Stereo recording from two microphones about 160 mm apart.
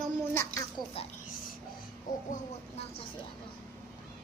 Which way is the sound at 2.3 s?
50° left (ahead or behind).